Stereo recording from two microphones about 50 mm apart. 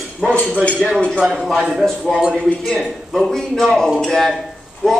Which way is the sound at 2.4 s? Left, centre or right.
Centre.